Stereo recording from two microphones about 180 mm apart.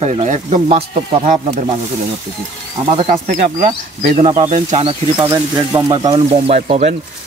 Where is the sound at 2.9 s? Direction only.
30° right (ahead or behind).